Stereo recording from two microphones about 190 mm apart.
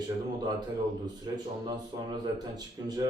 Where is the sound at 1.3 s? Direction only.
20° right (ahead or behind).